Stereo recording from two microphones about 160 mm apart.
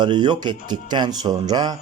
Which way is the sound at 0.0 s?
30° right (ahead or behind).